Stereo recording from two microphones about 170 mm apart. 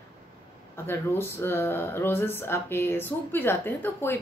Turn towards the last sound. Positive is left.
turn(degrees=10)  # may be behind; listen again after turning